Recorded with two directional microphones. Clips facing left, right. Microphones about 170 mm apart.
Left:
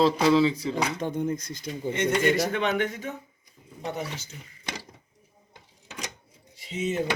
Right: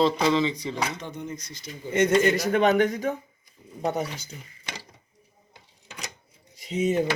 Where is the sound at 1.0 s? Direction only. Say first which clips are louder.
Left 7 dB; 50° left (ahead or behind).